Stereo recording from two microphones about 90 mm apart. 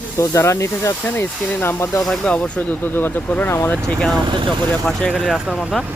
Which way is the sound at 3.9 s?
5° left (ahead or behind).